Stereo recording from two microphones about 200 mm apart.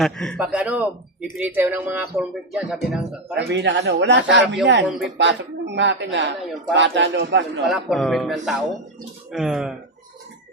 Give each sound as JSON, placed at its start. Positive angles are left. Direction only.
{"t": 0.0, "sound": "speech", "side_deg": 0}
{"t": 3.3, "sound": "speech", "side_deg": -60}
{"t": 7.7, "sound": "speech", "side_deg": 0}